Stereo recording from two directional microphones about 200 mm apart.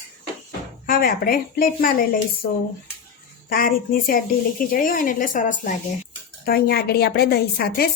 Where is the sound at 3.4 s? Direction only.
45° left (ahead or behind).